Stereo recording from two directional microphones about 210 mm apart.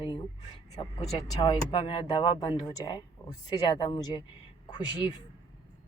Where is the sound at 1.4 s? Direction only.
25° left (ahead or behind).